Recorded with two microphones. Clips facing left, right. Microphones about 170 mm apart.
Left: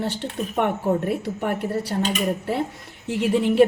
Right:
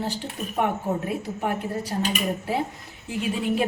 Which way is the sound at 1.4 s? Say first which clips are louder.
Left 3 dB; 65° left (ahead or behind).